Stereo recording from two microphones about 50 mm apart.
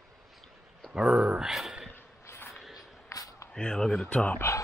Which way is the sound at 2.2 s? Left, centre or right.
Left.